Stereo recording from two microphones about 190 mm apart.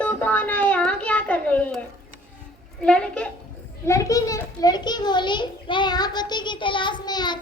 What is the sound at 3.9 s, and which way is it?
A child's voice, 15° left (ahead or behind).